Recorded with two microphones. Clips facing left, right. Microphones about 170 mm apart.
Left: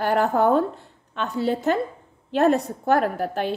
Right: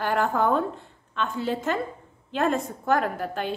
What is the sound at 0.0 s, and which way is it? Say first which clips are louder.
A woman's voice: left 4 dB; 40° left (ahead or behind).